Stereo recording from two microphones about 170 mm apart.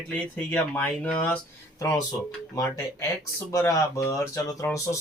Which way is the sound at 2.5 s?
20° left (ahead or behind).